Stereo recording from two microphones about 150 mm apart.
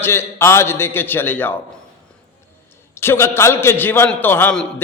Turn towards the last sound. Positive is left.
turn(degrees=15)  # may be behind; listen again after turning